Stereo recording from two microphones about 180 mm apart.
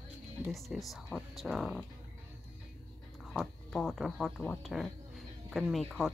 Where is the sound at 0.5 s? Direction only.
Centre (ahead or behind).